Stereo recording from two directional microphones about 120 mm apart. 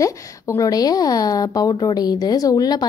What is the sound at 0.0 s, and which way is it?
Speech, 30° left (ahead or behind).